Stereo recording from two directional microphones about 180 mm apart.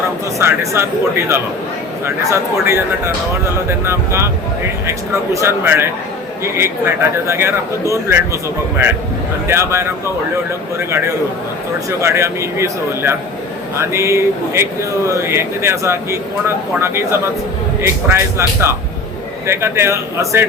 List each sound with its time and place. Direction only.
0.3 s speech: 15° right (ahead or behind)
2.0 s speech: 15° right (ahead or behind)
9.5 s speech: 15° right (ahead or behind)
11.9 s speech: 15° right (ahead or behind)